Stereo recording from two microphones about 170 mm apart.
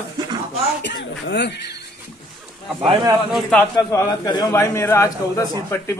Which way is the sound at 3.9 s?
20° left (ahead or behind).